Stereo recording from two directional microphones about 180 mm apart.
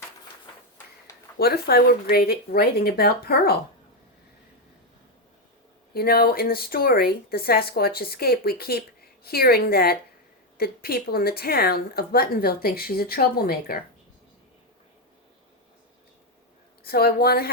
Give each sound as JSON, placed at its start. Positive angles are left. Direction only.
{"t": 1.4, "sound": "speech", "side_deg": 60}
{"t": 5.9, "sound": "speech", "side_deg": 55}
{"t": 16.8, "sound": "speech", "side_deg": 60}